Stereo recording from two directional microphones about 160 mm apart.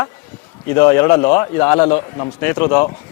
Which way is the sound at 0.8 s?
20° left (ahead or behind).